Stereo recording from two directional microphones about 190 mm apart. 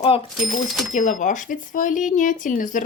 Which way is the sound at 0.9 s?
40° left (ahead or behind).